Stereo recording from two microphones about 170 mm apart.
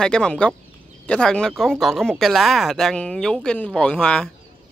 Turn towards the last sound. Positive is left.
turn(degrees=5)  # may be behind; listen again after turning